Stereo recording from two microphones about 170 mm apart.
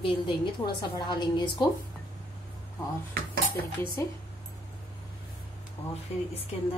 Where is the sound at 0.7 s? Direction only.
25° left (ahead or behind).